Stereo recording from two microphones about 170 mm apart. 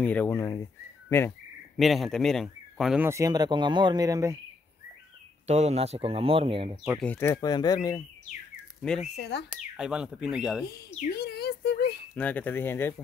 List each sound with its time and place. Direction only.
0.0 s speech: 10° left (ahead or behind)
1.8 s speech: centre (ahead or behind)
3.1 s speech: 20° right (ahead or behind)
5.5 s speech: 40° right (ahead or behind)
7.0 s speech: 10° left (ahead or behind)
8.5 s bird: 5° left (ahead or behind)
9.1 s speech: 80° left
9.5 s speech: 5° right (ahead or behind)
11.1 s speech: 70° left (ahead or behind)
12.2 s speech: 10° left (ahead or behind)